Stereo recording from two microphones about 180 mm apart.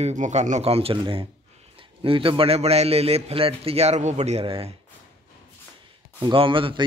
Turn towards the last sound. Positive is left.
turn(degrees=-30)  # may be behind; listen again after turning